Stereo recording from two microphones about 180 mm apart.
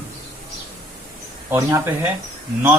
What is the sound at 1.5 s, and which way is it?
Speech, 15° right (ahead or behind).